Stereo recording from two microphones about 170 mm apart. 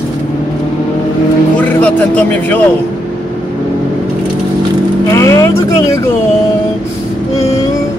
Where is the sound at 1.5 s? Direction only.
10° left (ahead or behind).